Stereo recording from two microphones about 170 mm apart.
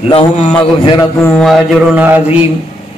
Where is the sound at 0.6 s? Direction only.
25° left (ahead or behind).